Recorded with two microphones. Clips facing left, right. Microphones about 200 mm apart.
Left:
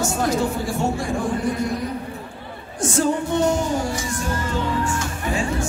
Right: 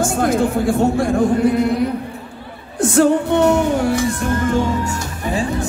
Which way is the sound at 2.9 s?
60° right (ahead or behind).